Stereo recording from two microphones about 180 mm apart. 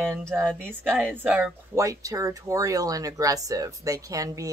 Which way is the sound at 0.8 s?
10° right (ahead or behind).